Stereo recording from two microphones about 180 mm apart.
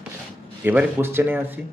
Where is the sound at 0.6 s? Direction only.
10° right (ahead or behind).